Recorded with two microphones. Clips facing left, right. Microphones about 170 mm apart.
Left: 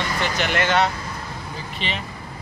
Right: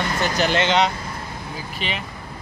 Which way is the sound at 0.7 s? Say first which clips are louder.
Right 1 dB; 20° right (ahead or behind).